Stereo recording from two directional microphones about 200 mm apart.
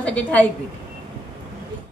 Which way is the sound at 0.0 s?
5° left (ahead or behind).